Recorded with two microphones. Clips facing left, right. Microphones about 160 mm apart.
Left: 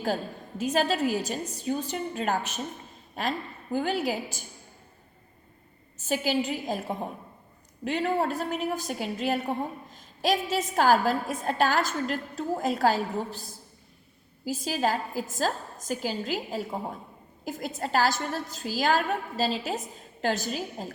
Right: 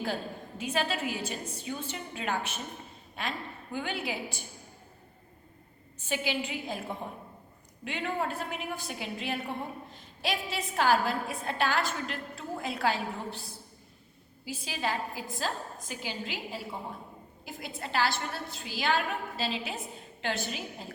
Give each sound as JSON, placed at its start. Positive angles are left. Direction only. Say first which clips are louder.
{"t": 0.6, "sound": "a woman's voice", "louder": "left 6 dB", "side_deg": 40}
{"t": 6.0, "sound": "a woman's voice", "louder": "left 6 dB", "side_deg": 40}